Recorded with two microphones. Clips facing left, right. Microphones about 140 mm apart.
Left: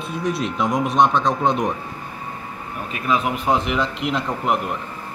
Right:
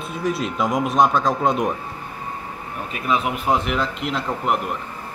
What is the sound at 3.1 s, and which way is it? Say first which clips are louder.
Speech: left 1 dB; centre (ahead or behind).